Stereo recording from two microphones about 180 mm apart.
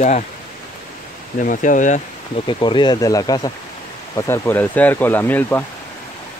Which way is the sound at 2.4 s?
25° left (ahead or behind).